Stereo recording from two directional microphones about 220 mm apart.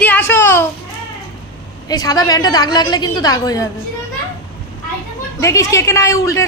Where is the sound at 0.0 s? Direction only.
10° left (ahead or behind).